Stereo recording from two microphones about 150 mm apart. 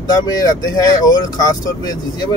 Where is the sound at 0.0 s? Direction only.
25° left (ahead or behind).